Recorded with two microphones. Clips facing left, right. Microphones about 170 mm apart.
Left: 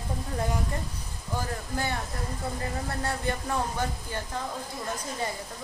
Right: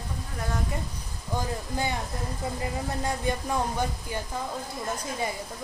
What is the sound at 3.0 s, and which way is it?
A woman's voice, 15° right (ahead or behind).